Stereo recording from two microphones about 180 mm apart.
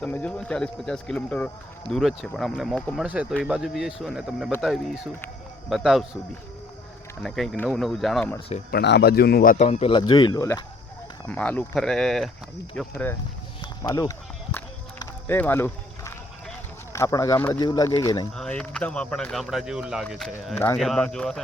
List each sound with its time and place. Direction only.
0.0 s speech: 10° left (ahead or behind)
7.2 s speech: centre (ahead or behind)
8.7 s a man's voice: 65° left (ahead or behind); by 9.6 s 50° left (ahead or behind)
9.6 s speech: 35° left (ahead or behind); by 12.3 s centre (ahead or behind)
12.9 s speech: 10° left (ahead or behind)
13.6 s a sound: 20° left (ahead or behind)
14.9 s run: 10° left (ahead or behind)
16.9 s speech: 15° left (ahead or behind)
18.3 s speech: 5° left (ahead or behind)